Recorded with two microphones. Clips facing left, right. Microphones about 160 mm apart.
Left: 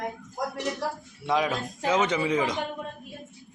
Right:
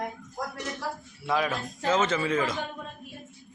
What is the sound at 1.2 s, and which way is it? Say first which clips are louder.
A man's voice: left 2 dB; 20° left (ahead or behind).